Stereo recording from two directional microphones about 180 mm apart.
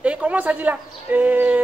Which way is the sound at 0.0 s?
5° right (ahead or behind).